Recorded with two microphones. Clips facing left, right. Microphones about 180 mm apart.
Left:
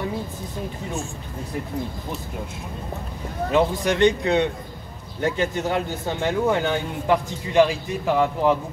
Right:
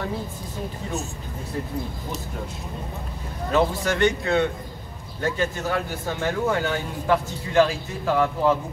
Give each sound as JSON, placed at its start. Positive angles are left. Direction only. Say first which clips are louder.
{"t": 3.5, "sound": "a man's voice", "louder": "left 2 dB", "side_deg": 20}